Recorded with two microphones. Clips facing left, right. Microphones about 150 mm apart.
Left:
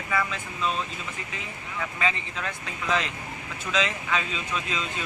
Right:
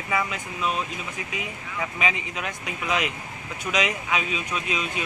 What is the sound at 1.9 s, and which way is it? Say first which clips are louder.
Speech: right 1 dB; 15° right (ahead or behind).